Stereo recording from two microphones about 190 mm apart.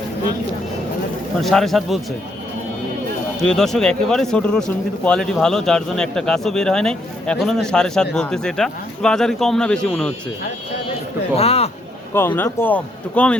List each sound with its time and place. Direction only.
1.4 s speech: centre (ahead or behind)
3.4 s speech: 5° left (ahead or behind)
11.3 s speech: 35° left (ahead or behind)
12.4 s a man's voice: 10° left (ahead or behind)